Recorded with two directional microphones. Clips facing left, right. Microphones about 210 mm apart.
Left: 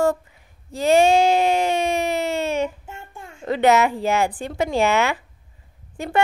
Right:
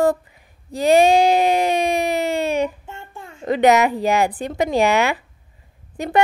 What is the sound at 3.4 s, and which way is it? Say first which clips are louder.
A woman's voice: right 2 dB; 15° right (ahead or behind).